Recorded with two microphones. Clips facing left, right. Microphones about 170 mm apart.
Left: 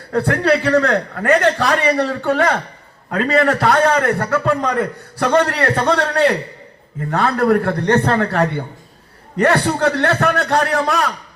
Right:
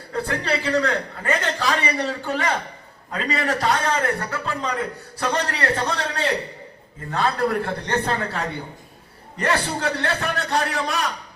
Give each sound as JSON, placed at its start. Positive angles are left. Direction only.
{"t": 0.1, "sound": "a man's voice", "side_deg": 65}